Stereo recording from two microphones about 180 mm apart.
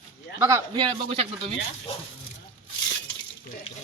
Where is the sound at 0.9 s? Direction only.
30° right (ahead or behind).